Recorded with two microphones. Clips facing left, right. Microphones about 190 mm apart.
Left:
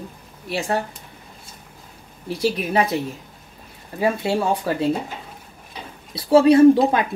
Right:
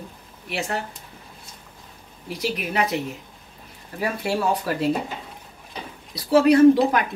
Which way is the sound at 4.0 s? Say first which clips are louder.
Left 4 dB; 25° left (ahead or behind).